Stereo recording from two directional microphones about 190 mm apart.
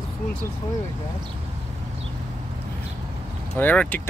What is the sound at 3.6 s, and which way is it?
Speech, 10° left (ahead or behind).